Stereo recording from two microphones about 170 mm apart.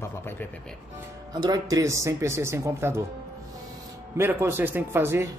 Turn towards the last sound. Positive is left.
turn(degrees=-15)  # may be behind; listen again after turning